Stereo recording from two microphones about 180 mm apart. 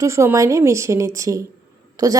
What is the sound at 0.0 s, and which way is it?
A woman's voice, 15° right (ahead or behind).